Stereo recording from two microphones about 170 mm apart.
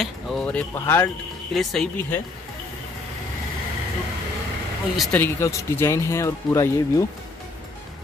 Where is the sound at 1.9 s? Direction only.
10° left (ahead or behind).